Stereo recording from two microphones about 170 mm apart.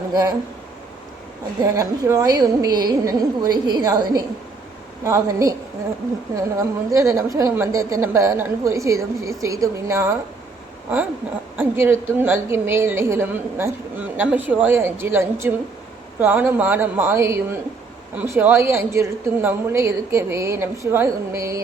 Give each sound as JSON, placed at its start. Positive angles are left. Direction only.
{"t": 0.1, "sound": "speech", "side_deg": -20}
{"t": 1.7, "sound": "a woman's voice", "side_deg": -20}
{"t": 11.5, "sound": "a woman's voice", "side_deg": -15}